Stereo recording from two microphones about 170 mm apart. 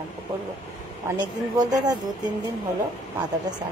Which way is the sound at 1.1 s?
20° right (ahead or behind).